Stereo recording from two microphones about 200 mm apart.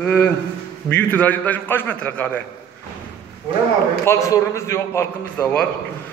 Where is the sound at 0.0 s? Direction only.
10° left (ahead or behind).